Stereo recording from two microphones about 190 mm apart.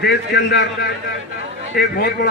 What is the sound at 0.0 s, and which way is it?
A man's voice, 60° left (ahead or behind).